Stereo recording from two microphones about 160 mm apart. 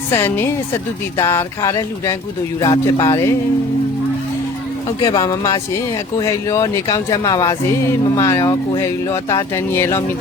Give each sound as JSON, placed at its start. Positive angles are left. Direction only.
{"t": 0.1, "sound": "speech", "side_deg": 15}
{"t": 5.0, "sound": "speech", "side_deg": 25}